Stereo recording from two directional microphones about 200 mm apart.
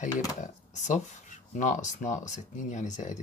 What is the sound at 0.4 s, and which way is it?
Speech, 35° left (ahead or behind).